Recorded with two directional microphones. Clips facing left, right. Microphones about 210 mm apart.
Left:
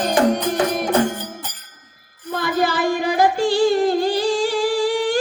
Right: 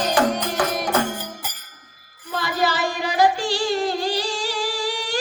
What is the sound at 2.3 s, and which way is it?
Music, 50° left (ahead or behind).